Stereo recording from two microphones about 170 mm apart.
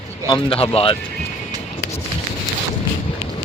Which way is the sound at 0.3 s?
35° left (ahead or behind).